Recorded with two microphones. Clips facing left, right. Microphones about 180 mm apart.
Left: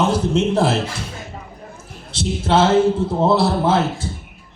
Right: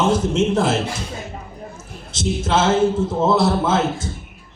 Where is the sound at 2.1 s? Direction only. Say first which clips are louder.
Left 2 dB; 35° left (ahead or behind).